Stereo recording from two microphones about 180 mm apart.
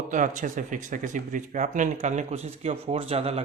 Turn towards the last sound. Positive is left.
turn(degrees=-35)  # may be behind; listen again after turning